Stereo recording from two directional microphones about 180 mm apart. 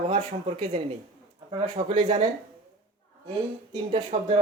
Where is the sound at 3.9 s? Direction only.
30° right (ahead or behind).